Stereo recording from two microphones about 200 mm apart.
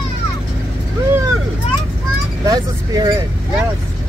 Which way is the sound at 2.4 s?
20° right (ahead or behind).